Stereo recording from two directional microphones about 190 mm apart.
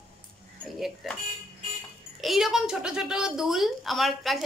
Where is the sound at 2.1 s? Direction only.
Centre (ahead or behind).